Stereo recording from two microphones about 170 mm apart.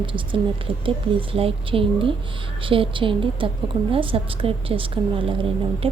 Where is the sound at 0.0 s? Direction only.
30° right (ahead or behind).